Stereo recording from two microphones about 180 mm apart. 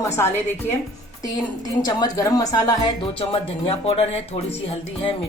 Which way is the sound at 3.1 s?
30° left (ahead or behind).